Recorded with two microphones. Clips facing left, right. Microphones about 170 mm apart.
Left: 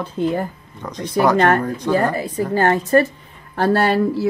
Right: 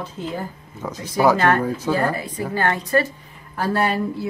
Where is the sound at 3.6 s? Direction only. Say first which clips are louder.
Left 5 dB; 65° left (ahead or behind).